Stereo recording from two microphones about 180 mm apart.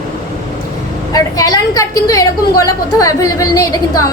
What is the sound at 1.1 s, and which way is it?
A woman's voice, 20° left (ahead or behind).